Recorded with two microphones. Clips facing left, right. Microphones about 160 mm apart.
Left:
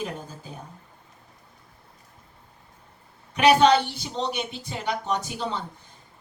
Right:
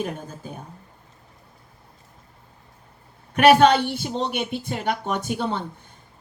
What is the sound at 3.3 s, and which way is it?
A woman's voice, 55° right (ahead or behind).